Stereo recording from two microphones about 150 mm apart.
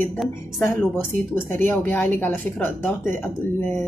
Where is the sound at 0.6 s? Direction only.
15° left (ahead or behind).